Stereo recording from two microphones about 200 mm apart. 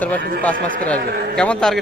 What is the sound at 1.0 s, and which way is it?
Speech, 50° right (ahead or behind).